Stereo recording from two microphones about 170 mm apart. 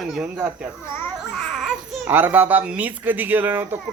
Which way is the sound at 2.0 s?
10° right (ahead or behind).